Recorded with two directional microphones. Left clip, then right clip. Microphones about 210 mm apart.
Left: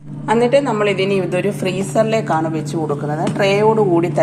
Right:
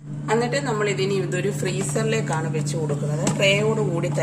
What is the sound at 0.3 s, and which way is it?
A woman's voice, 25° left (ahead or behind).